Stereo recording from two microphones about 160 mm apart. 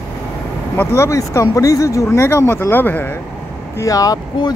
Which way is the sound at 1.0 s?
20° left (ahead or behind).